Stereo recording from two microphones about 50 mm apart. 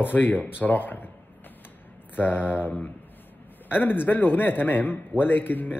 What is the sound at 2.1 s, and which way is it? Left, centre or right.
Speech, left.